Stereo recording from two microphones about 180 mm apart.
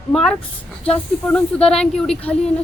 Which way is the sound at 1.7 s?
5° left (ahead or behind).